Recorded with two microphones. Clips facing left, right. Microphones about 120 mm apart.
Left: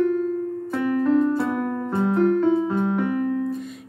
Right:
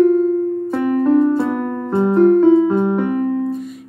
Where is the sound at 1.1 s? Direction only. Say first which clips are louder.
Right 5 dB; 25° right (ahead or behind).